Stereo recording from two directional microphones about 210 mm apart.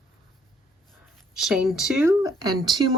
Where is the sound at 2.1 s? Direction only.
15° right (ahead or behind).